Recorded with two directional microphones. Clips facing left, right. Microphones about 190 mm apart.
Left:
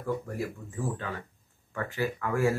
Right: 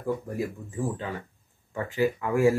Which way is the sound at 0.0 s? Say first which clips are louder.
Right 3 dB; 15° right (ahead or behind).